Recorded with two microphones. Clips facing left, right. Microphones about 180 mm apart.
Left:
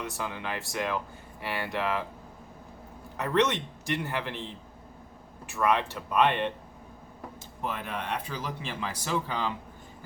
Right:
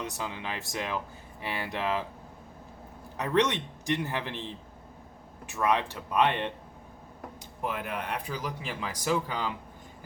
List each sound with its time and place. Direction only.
0.0 s speech: 20° right (ahead or behind)
3.2 s speech: 15° right (ahead or behind)
7.7 s speech: 15° right (ahead or behind)